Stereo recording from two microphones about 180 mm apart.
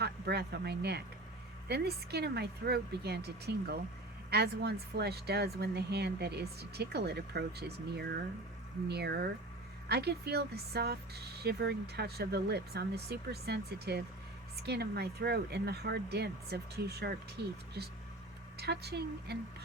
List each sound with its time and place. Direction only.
0.0 s speech: 65° right (ahead or behind)